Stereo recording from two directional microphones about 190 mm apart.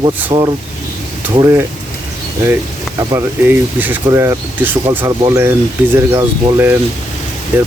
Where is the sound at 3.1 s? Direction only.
15° right (ahead or behind).